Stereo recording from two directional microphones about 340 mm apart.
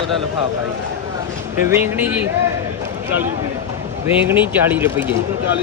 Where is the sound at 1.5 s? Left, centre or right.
Centre.